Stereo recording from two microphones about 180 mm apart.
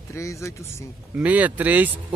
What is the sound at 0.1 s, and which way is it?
Speech, 15° left (ahead or behind).